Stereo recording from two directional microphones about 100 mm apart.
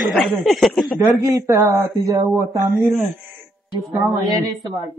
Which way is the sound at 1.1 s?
35° right (ahead or behind).